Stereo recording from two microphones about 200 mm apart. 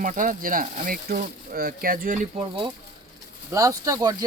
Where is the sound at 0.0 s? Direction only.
40° right (ahead or behind).